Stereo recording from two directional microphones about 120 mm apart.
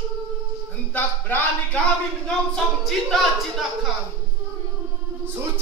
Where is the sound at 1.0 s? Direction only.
15° left (ahead or behind).